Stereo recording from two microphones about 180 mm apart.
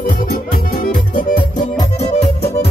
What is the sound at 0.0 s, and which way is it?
Music, 50° left (ahead or behind).